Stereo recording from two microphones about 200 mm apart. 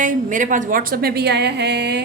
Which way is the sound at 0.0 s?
40° right (ahead or behind).